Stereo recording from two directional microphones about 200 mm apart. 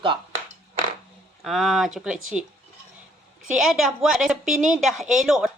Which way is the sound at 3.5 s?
Centre (ahead or behind).